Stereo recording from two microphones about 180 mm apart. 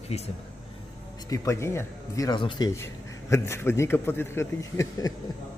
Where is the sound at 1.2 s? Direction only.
15° left (ahead or behind).